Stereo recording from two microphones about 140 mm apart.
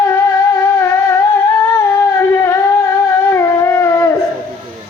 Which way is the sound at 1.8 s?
20° left (ahead or behind).